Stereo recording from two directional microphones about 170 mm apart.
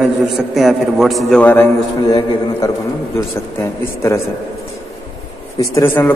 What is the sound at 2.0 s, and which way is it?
Speech, 25° left (ahead or behind).